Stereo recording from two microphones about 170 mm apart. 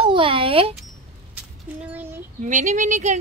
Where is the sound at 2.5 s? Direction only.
45° right (ahead or behind).